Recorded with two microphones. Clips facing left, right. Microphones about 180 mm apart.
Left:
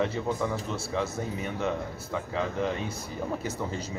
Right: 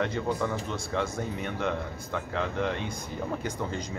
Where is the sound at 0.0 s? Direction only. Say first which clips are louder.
Even; centre (ahead or behind).